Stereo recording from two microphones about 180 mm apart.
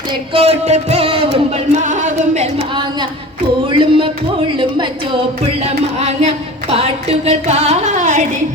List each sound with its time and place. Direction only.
0.1 s music: 30° right (ahead or behind)
1.8 s music: 45° right (ahead or behind)
3.7 s music: 30° right (ahead or behind)
5.6 s a sound: 35° right (ahead or behind)